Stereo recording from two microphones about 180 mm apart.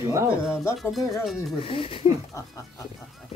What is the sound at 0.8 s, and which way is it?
Speech, centre (ahead or behind).